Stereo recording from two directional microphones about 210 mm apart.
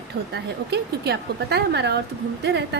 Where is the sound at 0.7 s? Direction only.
50° right (ahead or behind).